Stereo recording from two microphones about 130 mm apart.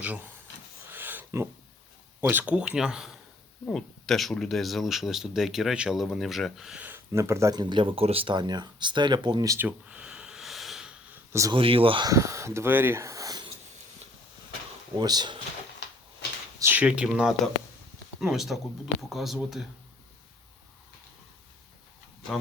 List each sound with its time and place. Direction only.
0.9 s a sound: 15° right (ahead or behind)
2.2 s speech: 10° right (ahead or behind)
6.8 s speech: 20° right (ahead or behind)
7.6 s speech: 40° right (ahead or behind)
9.6 s snort: 10° right (ahead or behind)
11.3 s speech: 25° right (ahead or behind)
11.5 s speech: 45° right (ahead or behind)
12.0 s speech: 25° right (ahead or behind)
14.9 s speech: 30° right (ahead or behind)
16.6 s speech: 15° right (ahead or behind)